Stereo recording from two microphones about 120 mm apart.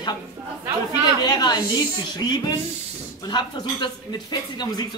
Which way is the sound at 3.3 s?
35° left (ahead or behind).